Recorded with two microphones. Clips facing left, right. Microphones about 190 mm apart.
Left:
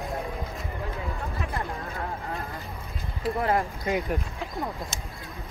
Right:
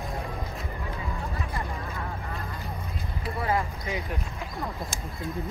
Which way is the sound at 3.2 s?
55° left (ahead or behind).